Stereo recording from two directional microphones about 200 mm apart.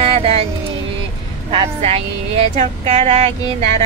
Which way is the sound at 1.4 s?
30° right (ahead or behind).